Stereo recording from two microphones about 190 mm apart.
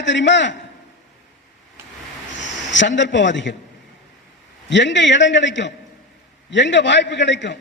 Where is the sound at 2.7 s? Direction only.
70° left (ahead or behind).